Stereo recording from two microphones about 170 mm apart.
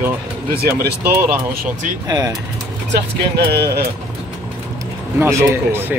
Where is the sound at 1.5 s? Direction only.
55° right (ahead or behind).